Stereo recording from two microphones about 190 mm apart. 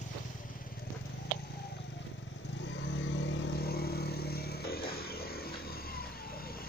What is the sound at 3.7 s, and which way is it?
Vehicle, 55° left (ahead or behind).